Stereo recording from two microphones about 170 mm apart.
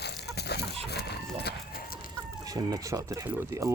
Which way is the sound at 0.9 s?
75° left (ahead or behind).